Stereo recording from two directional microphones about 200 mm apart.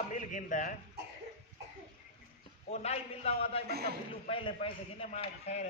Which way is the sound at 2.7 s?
30° left (ahead or behind).